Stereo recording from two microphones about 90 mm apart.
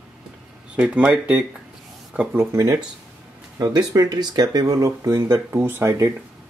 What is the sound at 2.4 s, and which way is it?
Speech, 35° right (ahead or behind).